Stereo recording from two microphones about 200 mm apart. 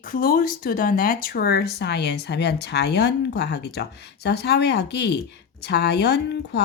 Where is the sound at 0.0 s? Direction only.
45° left (ahead or behind).